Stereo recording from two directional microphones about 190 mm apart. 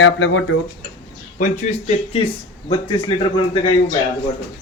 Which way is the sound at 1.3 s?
40° left (ahead or behind).